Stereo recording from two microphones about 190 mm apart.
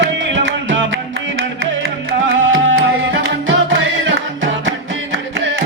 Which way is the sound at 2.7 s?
75° right (ahead or behind).